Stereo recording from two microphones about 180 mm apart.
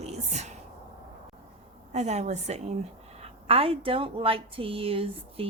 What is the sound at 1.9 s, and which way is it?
A woman's voice, 40° right (ahead or behind).